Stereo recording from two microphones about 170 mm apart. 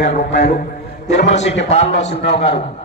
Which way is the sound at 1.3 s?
40° left (ahead or behind).